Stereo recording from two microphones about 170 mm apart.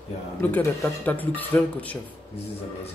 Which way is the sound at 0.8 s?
10° left (ahead or behind).